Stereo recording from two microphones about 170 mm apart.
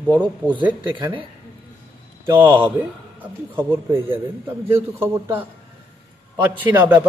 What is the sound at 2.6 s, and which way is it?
A man's voice, 10° right (ahead or behind).